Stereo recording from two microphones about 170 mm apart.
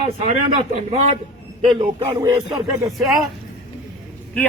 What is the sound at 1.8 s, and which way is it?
Speech, 35° right (ahead or behind).